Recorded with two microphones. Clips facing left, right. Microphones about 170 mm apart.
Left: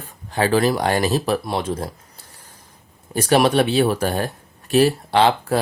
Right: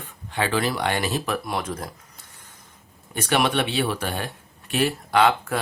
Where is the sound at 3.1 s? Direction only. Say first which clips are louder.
Left 6 dB; 35° left (ahead or behind).